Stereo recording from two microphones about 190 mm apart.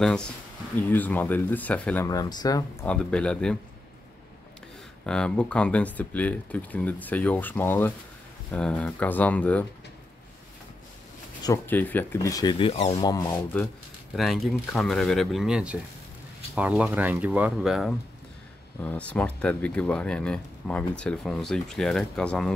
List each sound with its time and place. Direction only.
0.0 s speech: 5° left (ahead or behind)
2.0 s speech: 20° left (ahead or behind); by 3.5 s 5° left (ahead or behind)
5.0 s speech: 5° left (ahead or behind)
11.4 s speech: 15° left (ahead or behind); by 13.0 s 30° left (ahead or behind)
13.0 s speech: 20° left (ahead or behind)
14.1 s speech: centre (ahead or behind)